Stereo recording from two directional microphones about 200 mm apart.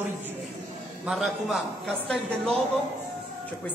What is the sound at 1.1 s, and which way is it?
A man's voice, centre (ahead or behind).